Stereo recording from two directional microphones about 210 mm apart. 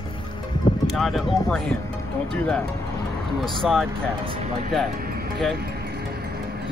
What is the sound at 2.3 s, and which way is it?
Speech, 5° left (ahead or behind).